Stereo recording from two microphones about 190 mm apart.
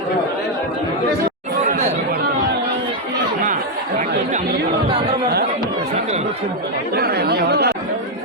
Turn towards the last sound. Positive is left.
turn(degrees=-60)  # may be behind; listen again after turning